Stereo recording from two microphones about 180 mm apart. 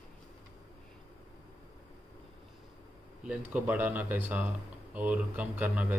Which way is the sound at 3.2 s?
5° right (ahead or behind).